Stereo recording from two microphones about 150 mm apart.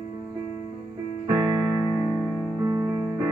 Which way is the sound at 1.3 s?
20° right (ahead or behind).